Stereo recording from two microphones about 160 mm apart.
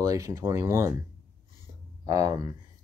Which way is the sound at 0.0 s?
20° right (ahead or behind).